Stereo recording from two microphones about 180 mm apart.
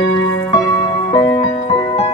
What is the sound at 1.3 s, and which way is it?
Music, 30° left (ahead or behind).